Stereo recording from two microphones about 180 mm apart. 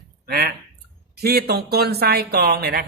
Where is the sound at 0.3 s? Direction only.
55° right (ahead or behind).